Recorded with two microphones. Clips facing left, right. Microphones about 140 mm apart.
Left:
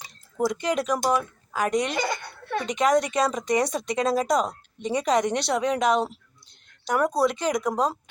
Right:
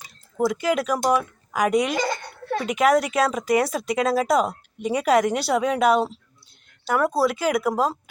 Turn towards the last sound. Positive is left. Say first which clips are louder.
# right 3 dB
turn(degrees=-5)  # may be behind; listen again after turning